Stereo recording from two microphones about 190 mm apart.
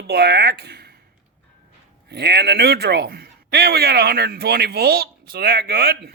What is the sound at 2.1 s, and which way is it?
A man's voice, 60° right (ahead or behind).